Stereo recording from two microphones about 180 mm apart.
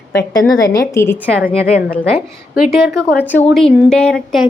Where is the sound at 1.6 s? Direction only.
50° left (ahead or behind).